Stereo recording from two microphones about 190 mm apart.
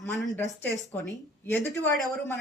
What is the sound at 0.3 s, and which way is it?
Speech, 15° left (ahead or behind).